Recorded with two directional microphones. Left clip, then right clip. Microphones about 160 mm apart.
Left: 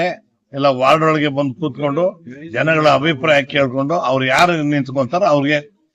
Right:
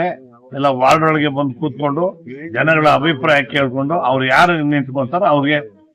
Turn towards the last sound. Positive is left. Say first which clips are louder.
# even
turn(degrees=35)  # may be behind; listen again after turning